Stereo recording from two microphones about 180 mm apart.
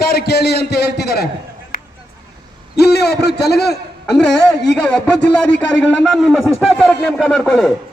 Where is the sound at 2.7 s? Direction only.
65° left (ahead or behind).